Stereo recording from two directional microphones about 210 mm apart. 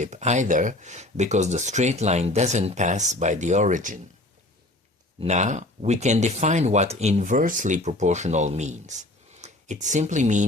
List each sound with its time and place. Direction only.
0.0 s speech: 35° right (ahead or behind)
5.2 s speech: 35° right (ahead or behind)